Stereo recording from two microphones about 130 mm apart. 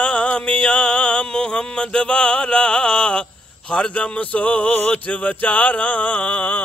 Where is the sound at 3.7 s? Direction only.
10° left (ahead or behind).